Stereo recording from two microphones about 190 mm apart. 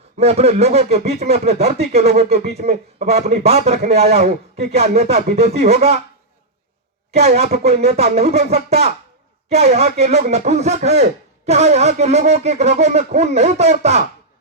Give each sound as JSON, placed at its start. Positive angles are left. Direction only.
{"t": 0.2, "sound": "speech", "side_deg": -35}
{"t": 7.1, "sound": "speech", "side_deg": -35}